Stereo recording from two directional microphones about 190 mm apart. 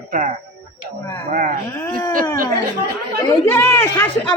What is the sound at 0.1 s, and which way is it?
Speech, 40° right (ahead or behind).